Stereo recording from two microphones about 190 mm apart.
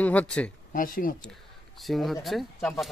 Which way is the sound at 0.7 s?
45° left (ahead or behind).